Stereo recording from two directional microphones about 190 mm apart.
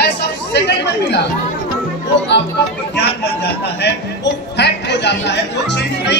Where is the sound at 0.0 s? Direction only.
60° left (ahead or behind).